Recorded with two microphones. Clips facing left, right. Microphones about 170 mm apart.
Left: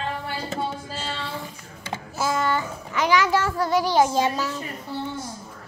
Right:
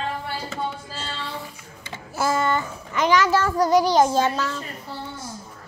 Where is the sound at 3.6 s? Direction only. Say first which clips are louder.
Right 4 dB; 40° right (ahead or behind).